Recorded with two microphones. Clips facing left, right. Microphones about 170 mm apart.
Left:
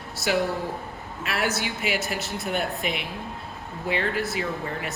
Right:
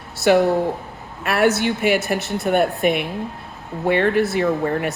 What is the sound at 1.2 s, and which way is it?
Speech, 60° right (ahead or behind).